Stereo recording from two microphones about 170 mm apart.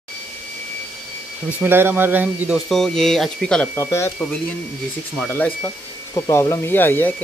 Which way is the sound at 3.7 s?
15° left (ahead or behind).